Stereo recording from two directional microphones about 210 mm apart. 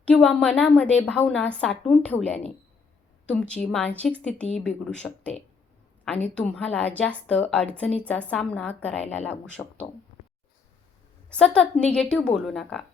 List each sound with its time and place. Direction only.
0.0 s a woman's voice: 5° left (ahead or behind)
11.3 s a woman's voice: 5° left (ahead or behind)